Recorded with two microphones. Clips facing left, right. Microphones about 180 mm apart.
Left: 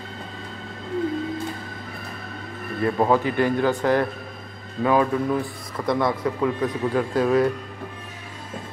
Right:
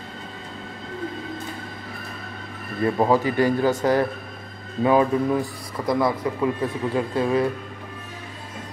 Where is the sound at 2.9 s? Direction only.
10° right (ahead or behind).